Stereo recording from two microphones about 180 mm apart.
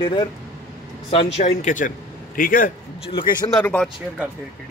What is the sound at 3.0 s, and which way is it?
Speech, 30° left (ahead or behind).